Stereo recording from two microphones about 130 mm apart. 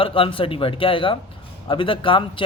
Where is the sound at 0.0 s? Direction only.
40° left (ahead or behind).